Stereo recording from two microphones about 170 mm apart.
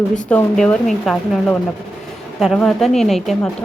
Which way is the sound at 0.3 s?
5° left (ahead or behind).